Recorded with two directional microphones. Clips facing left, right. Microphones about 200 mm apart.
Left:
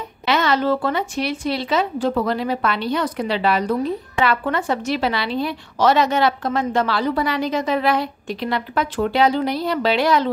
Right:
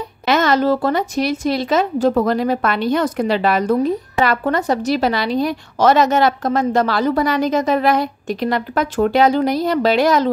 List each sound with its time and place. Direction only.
0.3 s a woman's voice: 45° right (ahead or behind)